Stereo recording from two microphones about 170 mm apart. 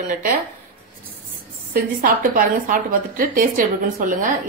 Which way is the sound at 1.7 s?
55° right (ahead or behind).